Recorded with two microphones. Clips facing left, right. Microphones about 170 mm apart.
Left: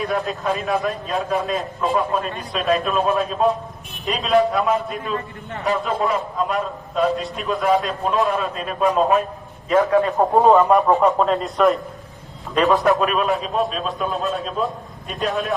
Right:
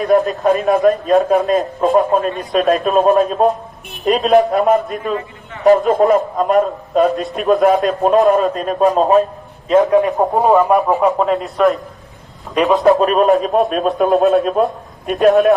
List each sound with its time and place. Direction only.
0.0 s a man's voice: 45° right (ahead or behind)
9.6 s a man's voice: 20° right (ahead or behind)
10.8 s a man's voice: 5° right (ahead or behind)
12.5 s a man's voice: 15° right (ahead or behind)
13.0 s a man's voice: 40° right (ahead or behind); by 15.5 s 55° right (ahead or behind)